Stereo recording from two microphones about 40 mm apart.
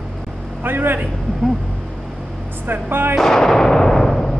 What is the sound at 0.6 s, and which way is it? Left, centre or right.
Speech, right.